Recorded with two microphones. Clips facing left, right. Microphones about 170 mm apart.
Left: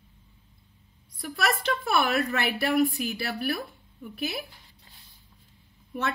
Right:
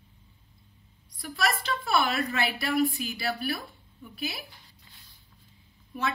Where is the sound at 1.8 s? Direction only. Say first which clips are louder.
Left 1 dB; 60° left (ahead or behind).